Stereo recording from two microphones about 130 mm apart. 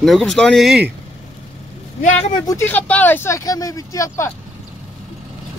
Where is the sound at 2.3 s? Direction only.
30° left (ahead or behind).